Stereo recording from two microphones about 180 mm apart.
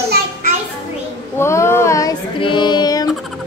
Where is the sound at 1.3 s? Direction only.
15° left (ahead or behind).